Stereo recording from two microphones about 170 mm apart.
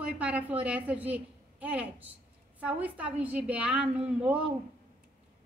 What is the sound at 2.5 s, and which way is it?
A woman's voice, 10° right (ahead or behind).